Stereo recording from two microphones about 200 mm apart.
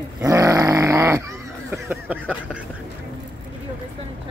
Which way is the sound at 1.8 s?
10° right (ahead or behind).